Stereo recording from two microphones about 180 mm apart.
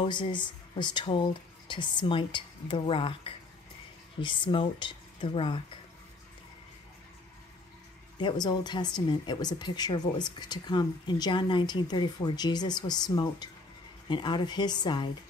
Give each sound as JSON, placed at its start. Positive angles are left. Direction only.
{"t": 0.0, "sound": "speech", "side_deg": 25}
{"t": 8.2, "sound": "speech", "side_deg": 25}